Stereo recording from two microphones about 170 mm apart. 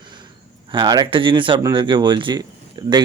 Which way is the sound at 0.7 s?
25° right (ahead or behind).